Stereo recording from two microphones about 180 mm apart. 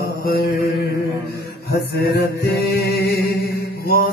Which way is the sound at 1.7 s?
65° left (ahead or behind).